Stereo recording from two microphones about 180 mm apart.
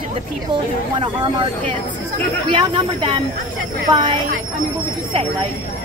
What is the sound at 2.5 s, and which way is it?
Speech, 25° right (ahead or behind).